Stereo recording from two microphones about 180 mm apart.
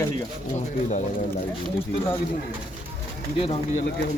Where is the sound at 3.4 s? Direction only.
35° left (ahead or behind).